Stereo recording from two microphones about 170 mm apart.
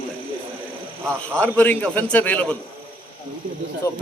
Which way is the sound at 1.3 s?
10° left (ahead or behind).